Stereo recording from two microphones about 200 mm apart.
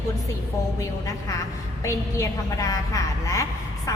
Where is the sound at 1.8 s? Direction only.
15° left (ahead or behind).